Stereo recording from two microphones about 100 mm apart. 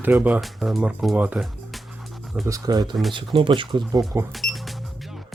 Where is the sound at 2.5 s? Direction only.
40° right (ahead or behind).